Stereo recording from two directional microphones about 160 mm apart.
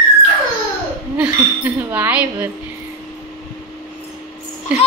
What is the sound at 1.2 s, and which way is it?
Speech, 10° right (ahead or behind).